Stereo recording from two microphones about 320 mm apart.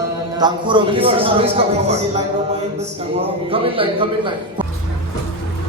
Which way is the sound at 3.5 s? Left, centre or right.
Centre.